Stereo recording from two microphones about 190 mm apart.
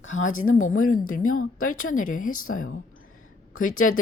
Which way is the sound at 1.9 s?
45° left (ahead or behind).